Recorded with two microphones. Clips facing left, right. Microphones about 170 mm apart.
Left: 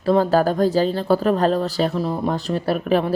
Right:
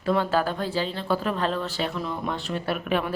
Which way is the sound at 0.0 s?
35° left (ahead or behind).